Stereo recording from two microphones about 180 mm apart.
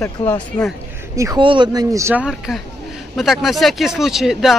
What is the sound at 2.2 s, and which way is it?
Speech, centre (ahead or behind).